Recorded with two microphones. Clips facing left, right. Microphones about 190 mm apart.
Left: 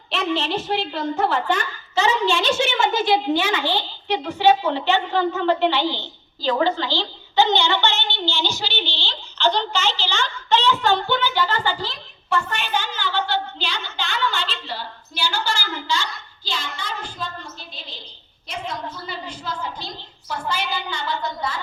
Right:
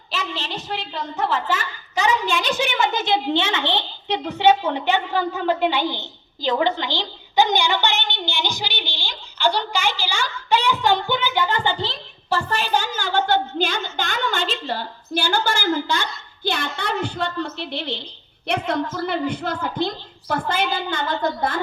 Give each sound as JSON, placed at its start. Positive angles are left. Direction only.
{"t": 0.1, "sound": "a woman's voice", "side_deg": 0}
{"t": 2.2, "sound": "a child's voice", "side_deg": -15}
{"t": 18.9, "sound": "a woman's voice", "side_deg": -55}